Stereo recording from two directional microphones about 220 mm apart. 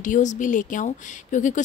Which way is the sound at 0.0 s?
35° left (ahead or behind).